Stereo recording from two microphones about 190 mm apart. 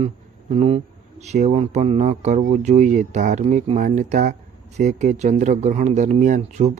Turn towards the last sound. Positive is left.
turn(degrees=-40)  # may be behind; listen again after turning